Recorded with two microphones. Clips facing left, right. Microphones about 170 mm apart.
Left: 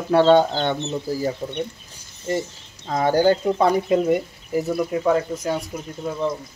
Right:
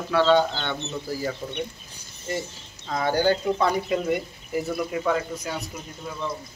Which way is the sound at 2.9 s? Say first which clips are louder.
Left 5 dB; 40° left (ahead or behind).